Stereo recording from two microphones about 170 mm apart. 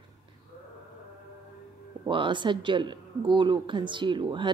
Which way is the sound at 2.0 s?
30° right (ahead or behind).